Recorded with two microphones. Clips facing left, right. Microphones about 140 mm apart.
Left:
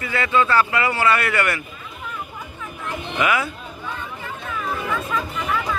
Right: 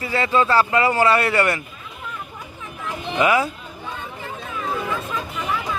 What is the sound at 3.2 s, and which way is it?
Speech, 30° right (ahead or behind).